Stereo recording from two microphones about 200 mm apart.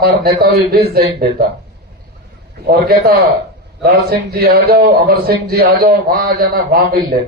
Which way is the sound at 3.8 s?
50° right (ahead or behind).